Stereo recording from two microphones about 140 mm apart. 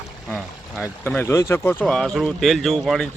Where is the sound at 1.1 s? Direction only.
15° left (ahead or behind); by 3.1 s centre (ahead or behind).